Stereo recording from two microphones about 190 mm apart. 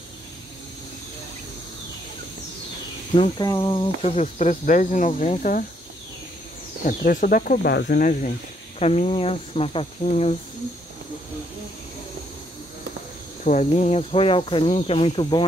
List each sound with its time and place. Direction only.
3.2 s speech: 20° left (ahead or behind); by 5.7 s 45° left (ahead or behind)
6.8 s speech: 45° left (ahead or behind)
8.7 s speech: 35° left (ahead or behind)
13.4 s speech: 40° left (ahead or behind)